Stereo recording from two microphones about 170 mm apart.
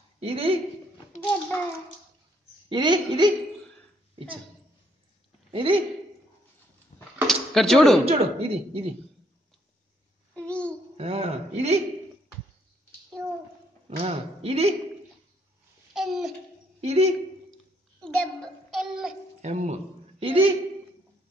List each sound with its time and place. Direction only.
0.2 s a woman's voice: 35° right (ahead or behind)
1.2 s a child's voice: 10° left (ahead or behind)
2.7 s a woman's voice: 25° right (ahead or behind)
5.5 s a woman's voice: 30° right (ahead or behind)
6.9 s a sound: 45° left (ahead or behind)
7.2 s a sound: centre (ahead or behind)
8.0 s a woman's voice: 35° right (ahead or behind)
10.3 s babbling: 5° left (ahead or behind)
11.0 s a woman's voice: 35° right (ahead or behind)
13.8 s a woman's voice: 40° right (ahead or behind)
15.9 s babbling: centre (ahead or behind)
16.8 s a woman's voice: 40° right (ahead or behind)
18.0 s a child's voice: 5° left (ahead or behind)
19.4 s a man's voice: 40° right (ahead or behind)